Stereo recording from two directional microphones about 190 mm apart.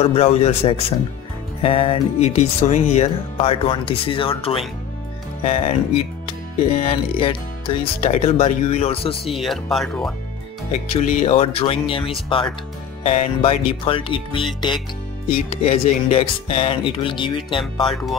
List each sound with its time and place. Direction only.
0.0 s speech: 30° left (ahead or behind)
9.3 s speech: centre (ahead or behind)
10.9 s speech: 35° left (ahead or behind)